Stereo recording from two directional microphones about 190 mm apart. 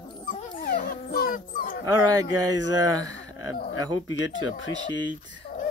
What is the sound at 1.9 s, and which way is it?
Speech, 20° right (ahead or behind).